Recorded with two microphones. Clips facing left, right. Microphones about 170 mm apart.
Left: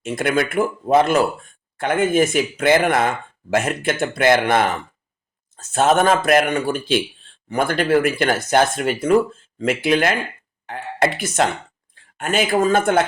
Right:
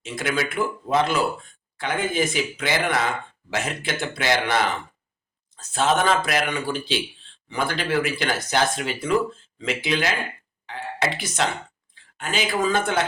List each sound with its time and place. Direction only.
0.0 s speech: 50° left (ahead or behind)
5.7 s speech: 50° left (ahead or behind)